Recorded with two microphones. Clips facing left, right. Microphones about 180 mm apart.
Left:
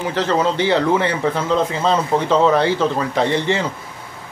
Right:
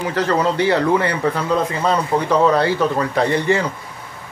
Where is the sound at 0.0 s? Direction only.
20° left (ahead or behind).